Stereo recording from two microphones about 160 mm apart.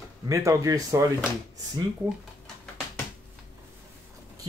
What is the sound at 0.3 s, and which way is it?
Speech, 20° right (ahead or behind).